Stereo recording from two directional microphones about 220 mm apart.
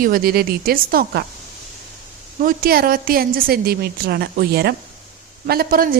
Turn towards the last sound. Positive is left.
turn(degrees=-40)  # may be behind; listen again after turning